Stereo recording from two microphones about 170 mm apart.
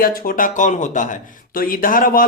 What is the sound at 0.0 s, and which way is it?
Speech, 60° left (ahead or behind).